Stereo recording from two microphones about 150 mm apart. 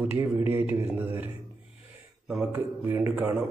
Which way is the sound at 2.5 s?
20° right (ahead or behind).